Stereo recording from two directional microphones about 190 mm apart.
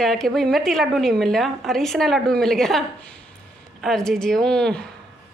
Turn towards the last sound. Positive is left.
turn(degrees=5)  # may be behind; listen again after turning